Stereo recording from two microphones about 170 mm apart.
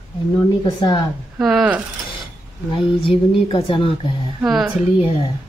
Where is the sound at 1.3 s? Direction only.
5° right (ahead or behind).